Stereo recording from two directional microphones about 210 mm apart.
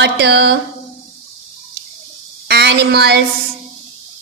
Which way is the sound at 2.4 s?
50° right (ahead or behind).